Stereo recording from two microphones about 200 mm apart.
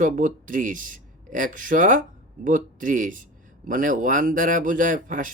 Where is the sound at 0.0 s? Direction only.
40° right (ahead or behind).